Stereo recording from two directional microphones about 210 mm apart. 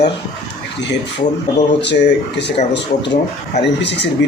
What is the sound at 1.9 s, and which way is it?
Speech, 55° left (ahead or behind).